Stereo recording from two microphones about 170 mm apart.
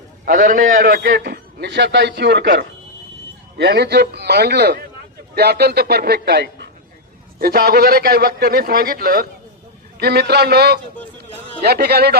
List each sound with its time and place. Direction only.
0.3 s a man's voice: 55° right (ahead or behind); by 2.6 s 90° right
3.6 s a man's voice: 75° right (ahead or behind)
7.3 s a man's voice: 60° right (ahead or behind)
10.0 s a man's voice: 70° right (ahead or behind)